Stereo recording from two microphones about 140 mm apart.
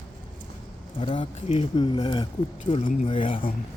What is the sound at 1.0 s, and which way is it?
Speech, 40° left (ahead or behind).